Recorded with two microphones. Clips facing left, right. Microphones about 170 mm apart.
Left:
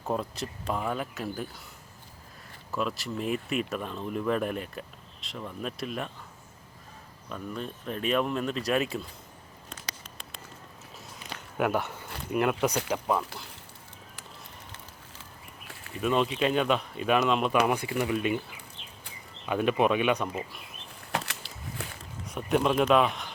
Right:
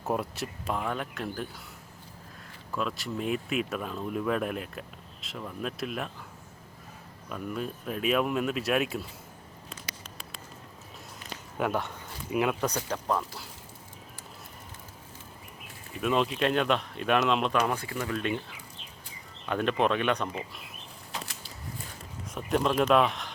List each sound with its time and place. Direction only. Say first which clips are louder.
0.0 s speech: even; 5° right (ahead or behind)
2.7 s speech: left 1 dB; centre (ahead or behind)
7.3 s speech: right 2 dB; 5° right (ahead or behind)
11.5 s speech: left 2 dB; 5° left (ahead or behind)
16.0 s speech: left 1 dB; centre (ahead or behind)
21.1 s a sound: left 7 dB; 75° left (ahead or behind)
22.4 s speech: left 1 dB; centre (ahead or behind)